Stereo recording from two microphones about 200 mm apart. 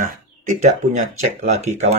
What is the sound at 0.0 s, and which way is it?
Speech, 40° right (ahead or behind).